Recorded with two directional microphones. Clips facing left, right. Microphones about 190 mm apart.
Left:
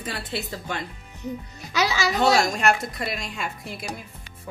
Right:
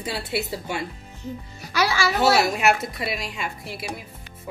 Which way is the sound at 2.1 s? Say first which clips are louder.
Even; 5° right (ahead or behind).